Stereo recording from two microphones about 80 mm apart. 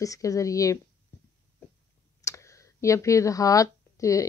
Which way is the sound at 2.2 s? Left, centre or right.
Left.